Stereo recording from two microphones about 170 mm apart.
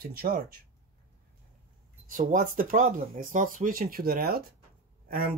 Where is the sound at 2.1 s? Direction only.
50° right (ahead or behind).